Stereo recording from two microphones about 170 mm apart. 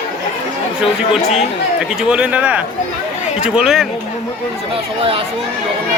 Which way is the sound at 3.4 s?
5° right (ahead or behind).